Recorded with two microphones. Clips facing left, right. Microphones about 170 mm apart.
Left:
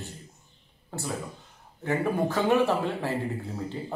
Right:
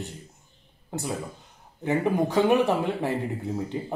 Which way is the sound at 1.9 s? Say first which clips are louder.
Right 2 dB; 15° right (ahead or behind).